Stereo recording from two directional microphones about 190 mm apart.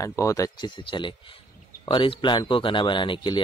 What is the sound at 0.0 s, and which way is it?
Speech, 15° left (ahead or behind).